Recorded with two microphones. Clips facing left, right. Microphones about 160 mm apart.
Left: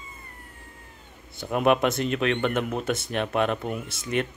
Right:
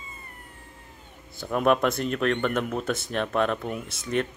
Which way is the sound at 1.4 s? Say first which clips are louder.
Left 1 dB; 10° left (ahead or behind).